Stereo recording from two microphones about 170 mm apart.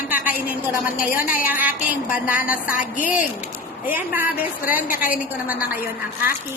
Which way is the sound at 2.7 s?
50° left (ahead or behind).